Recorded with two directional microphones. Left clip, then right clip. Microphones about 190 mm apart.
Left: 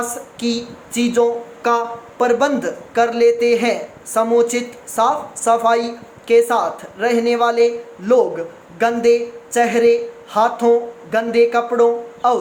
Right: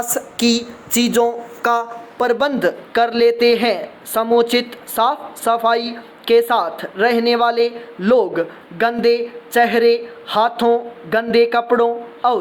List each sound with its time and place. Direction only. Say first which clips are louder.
0.0 s speech: right 4 dB; 45° right (ahead or behind)